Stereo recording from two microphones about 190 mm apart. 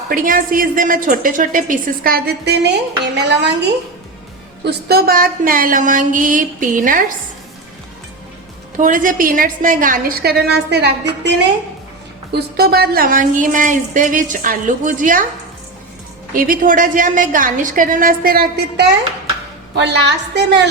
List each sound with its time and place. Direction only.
0.1 s a woman's voice: 45° right (ahead or behind); by 3.5 s 65° right (ahead or behind)
4.6 s a woman's voice: 55° right (ahead or behind)
8.8 s a woman's voice: 45° right (ahead or behind)
16.3 s a woman's voice: 45° right (ahead or behind); by 20.4 s 65° right (ahead or behind)